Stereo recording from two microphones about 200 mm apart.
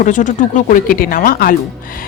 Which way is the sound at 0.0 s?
40° left (ahead or behind).